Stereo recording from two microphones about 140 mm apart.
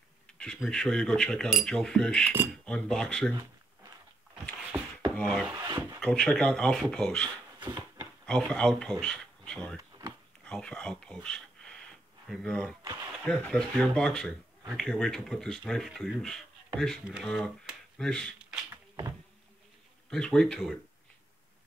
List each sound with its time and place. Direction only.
0.3 s speech: 5° left (ahead or behind)
4.7 s a sound: 20° right (ahead or behind)
5.1 s wood: 5° left (ahead or behind)
5.5 s drawer open or close: 20° right (ahead or behind)
5.9 s speech: 10° left (ahead or behind)
7.6 s a sound: 20° right (ahead or behind)
8.4 s speech: 5° left (ahead or behind)
9.8 s a sound: 25° right (ahead or behind)
10.4 s speech: 10° left (ahead or behind)
11.2 s a sound: 5° left (ahead or behind)
12.3 s speech: 5° left (ahead or behind)
20.1 s speech: 5° left (ahead or behind)